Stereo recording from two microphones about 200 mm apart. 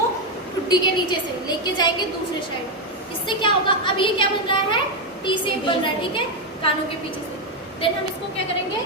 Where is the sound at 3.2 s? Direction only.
25° left (ahead or behind).